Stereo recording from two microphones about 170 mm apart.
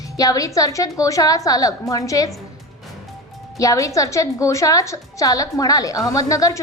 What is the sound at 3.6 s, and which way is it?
A woman's voice, 20° left (ahead or behind).